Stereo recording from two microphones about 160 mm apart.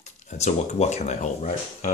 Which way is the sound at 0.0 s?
45° left (ahead or behind).